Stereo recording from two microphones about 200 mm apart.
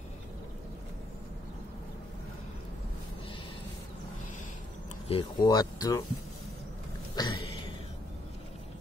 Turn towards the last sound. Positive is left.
turn(degrees=25)  # may be behind; listen again after turning